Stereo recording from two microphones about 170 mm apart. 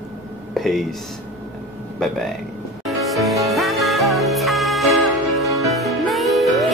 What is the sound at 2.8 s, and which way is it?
Music, centre (ahead or behind).